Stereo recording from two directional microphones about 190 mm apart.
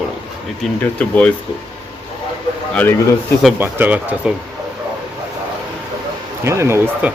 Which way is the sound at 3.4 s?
5° right (ahead or behind).